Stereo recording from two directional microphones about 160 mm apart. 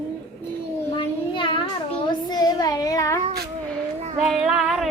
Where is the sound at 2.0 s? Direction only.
25° left (ahead or behind).